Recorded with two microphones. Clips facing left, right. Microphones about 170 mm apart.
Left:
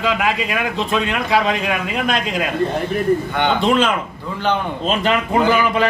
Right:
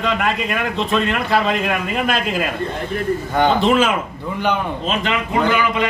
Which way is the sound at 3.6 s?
5° right (ahead or behind).